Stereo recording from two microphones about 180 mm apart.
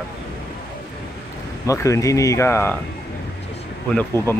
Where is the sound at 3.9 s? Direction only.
5° left (ahead or behind).